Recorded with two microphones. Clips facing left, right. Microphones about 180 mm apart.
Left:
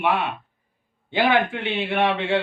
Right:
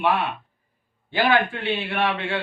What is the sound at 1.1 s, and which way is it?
Speech, 20° left (ahead or behind).